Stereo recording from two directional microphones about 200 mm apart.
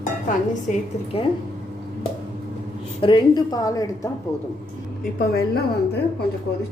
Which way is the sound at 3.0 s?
25° left (ahead or behind).